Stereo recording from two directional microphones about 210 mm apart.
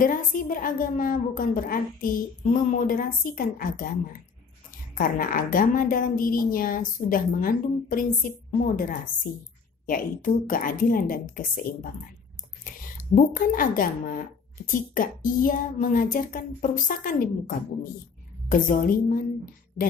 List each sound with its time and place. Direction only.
0.0 s a woman's voice: 40° left (ahead or behind)
13.1 s a woman's voice: 40° left (ahead or behind)